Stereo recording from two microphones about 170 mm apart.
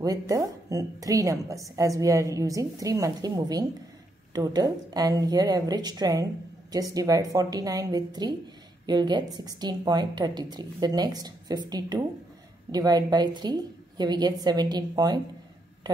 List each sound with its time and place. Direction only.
0.0 s a woman's voice: 20° right (ahead or behind)